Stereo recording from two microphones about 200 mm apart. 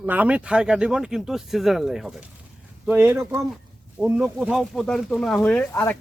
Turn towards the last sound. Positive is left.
turn(degrees=10)  # may be behind; listen again after turning